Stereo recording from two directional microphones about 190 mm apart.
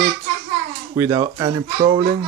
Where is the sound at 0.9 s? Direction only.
15° right (ahead or behind).